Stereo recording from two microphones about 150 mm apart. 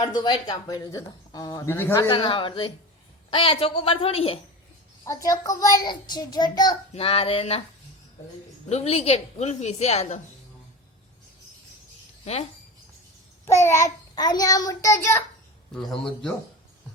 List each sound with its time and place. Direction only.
0.0 s a woman's voice: 30° left (ahead or behind)
2.0 s a woman's voice: 30° left (ahead or behind)
5.0 s a woman's voice: 25° left (ahead or behind)
6.9 s a woman's voice: 40° left (ahead or behind)
8.7 s a woman's voice: 45° left (ahead or behind)
12.2 s speech: 45° left (ahead or behind)
13.4 s a woman's voice: 20° left (ahead or behind)
15.7 s a man's voice: 5° left (ahead or behind)